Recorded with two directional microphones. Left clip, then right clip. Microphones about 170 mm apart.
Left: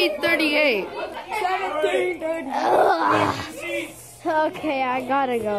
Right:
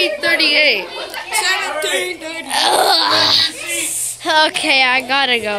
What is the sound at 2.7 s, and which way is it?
Wail, 15° left (ahead or behind).